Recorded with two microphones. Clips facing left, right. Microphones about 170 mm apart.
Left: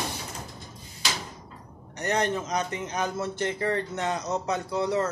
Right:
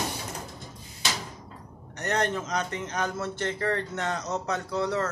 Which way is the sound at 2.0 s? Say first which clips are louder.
Left 1 dB; 5° left (ahead or behind).